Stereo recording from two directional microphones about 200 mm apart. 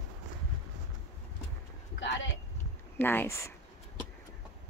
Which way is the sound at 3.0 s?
10° left (ahead or behind).